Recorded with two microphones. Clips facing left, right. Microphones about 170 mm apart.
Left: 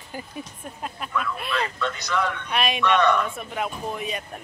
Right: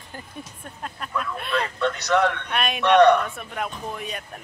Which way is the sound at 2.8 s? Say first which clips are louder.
Right 7 dB; 70° right (ahead or behind).